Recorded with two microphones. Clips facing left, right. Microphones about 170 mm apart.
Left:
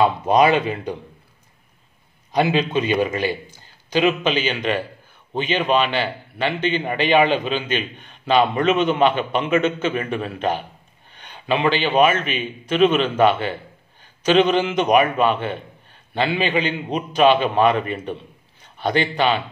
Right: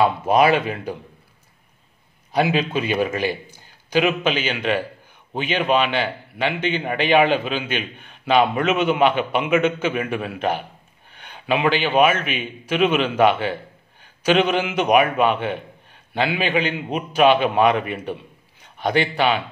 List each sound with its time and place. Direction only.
0.0 s speech: 5° right (ahead or behind)
2.3 s a man's voice: 5° right (ahead or behind)